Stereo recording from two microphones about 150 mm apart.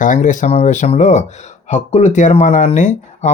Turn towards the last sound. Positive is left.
turn(degrees=55)  # may be behind; listen again after turning